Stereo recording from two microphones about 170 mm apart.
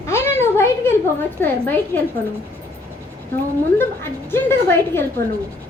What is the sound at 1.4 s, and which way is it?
Speech, 10° left (ahead or behind).